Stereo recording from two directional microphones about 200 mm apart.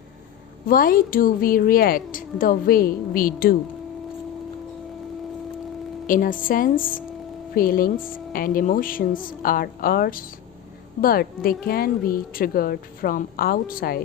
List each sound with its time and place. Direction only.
0.7 s speech: 45° left (ahead or behind)
6.1 s speech: 45° left (ahead or behind)